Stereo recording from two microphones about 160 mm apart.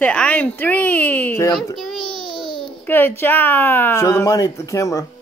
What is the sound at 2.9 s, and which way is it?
Speech, 10° left (ahead or behind).